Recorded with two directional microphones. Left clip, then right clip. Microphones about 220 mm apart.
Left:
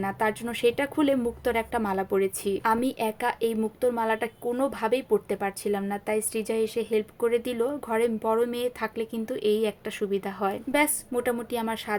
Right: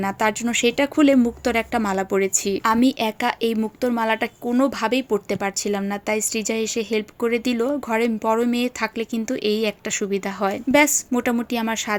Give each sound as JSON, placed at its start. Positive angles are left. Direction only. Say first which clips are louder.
{"t": 0.0, "sound": "speech", "louder": "right 6 dB", "side_deg": -35}